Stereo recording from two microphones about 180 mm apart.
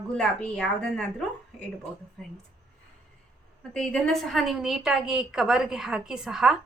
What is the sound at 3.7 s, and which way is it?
A woman's voice, 5° left (ahead or behind).